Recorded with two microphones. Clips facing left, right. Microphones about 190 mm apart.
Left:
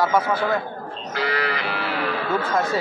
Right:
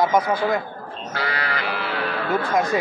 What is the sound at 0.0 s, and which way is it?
Speech, 15° right (ahead or behind).